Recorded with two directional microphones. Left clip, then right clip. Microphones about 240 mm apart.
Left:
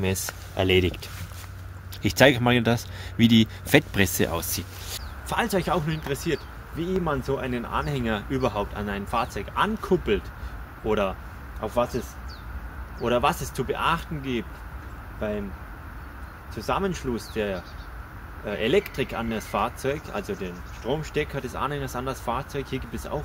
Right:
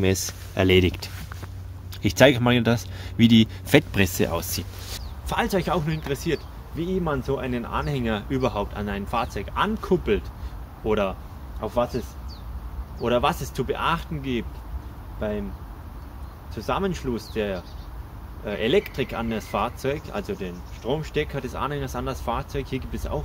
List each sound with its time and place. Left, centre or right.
0.0 s speech: right
2.0 s speech: centre
13.0 s speech: centre
16.5 s speech: centre